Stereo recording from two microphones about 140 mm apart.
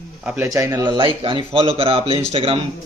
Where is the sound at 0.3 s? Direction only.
25° right (ahead or behind).